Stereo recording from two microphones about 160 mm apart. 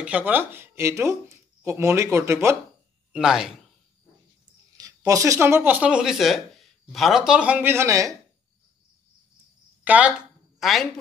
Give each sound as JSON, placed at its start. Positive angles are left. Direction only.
{"t": 0.0, "sound": "speech", "side_deg": -10}
{"t": 3.1, "sound": "speech", "side_deg": -5}
{"t": 4.7, "sound": "speech", "side_deg": -20}
{"t": 9.8, "sound": "a woman's voice", "side_deg": -10}